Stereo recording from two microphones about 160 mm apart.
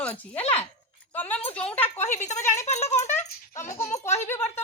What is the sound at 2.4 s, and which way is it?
Speech, 15° left (ahead or behind).